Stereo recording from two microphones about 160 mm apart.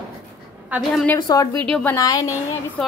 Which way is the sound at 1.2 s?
25° left (ahead or behind).